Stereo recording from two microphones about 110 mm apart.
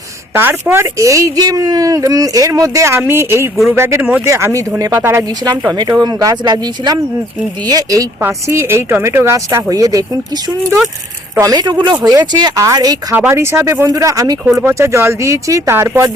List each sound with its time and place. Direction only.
0.3 s speech: 20° right (ahead or behind)
5.5 s speech: 35° right (ahead or behind)
11.3 s speech: 35° right (ahead or behind)
13.1 s speech: 20° right (ahead or behind)